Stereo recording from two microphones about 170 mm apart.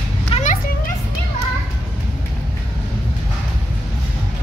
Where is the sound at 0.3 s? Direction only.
45° left (ahead or behind).